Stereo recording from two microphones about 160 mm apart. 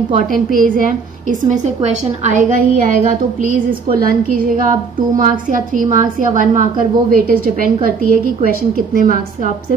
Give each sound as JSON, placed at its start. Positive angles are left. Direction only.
{"t": 0.3, "sound": "a woman's voice", "side_deg": -60}
{"t": 1.5, "sound": "a woman's voice", "side_deg": -45}